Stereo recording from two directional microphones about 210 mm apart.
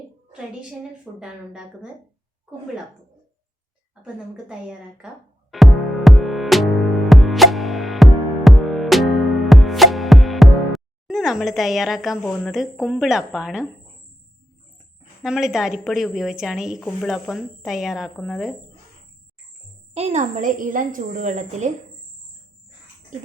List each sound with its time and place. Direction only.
1.2 s a woman's voice: 5° right (ahead or behind)
4.0 s a woman's voice: 5° right (ahead or behind)
5.5 s music: centre (ahead or behind)
15.2 s a woman's voice: centre (ahead or behind)
19.9 s a woman's voice: 30° right (ahead or behind)